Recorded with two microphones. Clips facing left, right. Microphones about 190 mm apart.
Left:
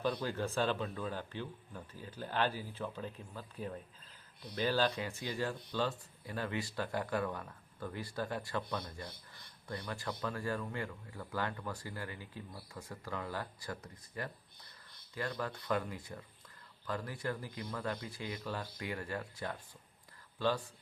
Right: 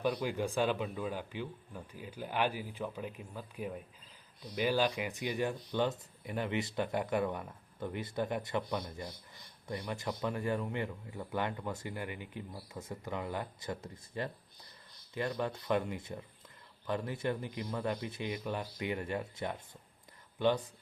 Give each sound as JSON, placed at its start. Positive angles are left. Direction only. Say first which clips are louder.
{"t": 0.0, "sound": "speech", "louder": "right 2 dB", "side_deg": -15}